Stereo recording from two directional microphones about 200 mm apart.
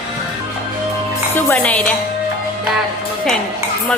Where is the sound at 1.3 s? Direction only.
10° left (ahead or behind).